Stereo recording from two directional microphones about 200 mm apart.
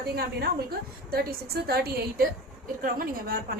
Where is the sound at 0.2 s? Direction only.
50° right (ahead or behind).